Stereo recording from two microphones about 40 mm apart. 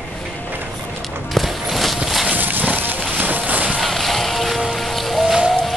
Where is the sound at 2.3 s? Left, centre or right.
Right.